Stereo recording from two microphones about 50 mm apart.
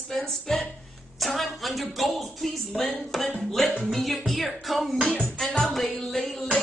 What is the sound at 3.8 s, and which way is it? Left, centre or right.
Speech, centre.